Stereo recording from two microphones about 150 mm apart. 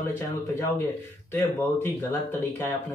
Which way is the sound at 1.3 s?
15° left (ahead or behind).